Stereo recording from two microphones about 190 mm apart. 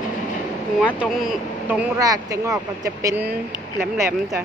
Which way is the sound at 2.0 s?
15° right (ahead or behind).